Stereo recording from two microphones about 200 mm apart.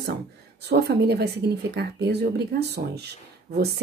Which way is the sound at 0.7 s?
55° right (ahead or behind).